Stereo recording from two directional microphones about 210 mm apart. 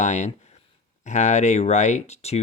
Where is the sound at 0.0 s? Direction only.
35° left (ahead or behind).